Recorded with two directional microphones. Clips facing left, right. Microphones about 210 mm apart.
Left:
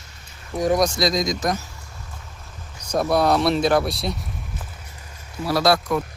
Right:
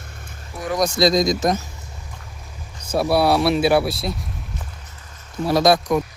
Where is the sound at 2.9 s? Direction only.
5° right (ahead or behind).